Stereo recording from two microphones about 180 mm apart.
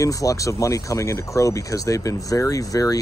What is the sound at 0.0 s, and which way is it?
Speech, 20° left (ahead or behind).